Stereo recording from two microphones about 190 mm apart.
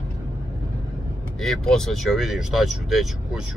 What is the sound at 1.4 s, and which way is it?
Speech, centre (ahead or behind).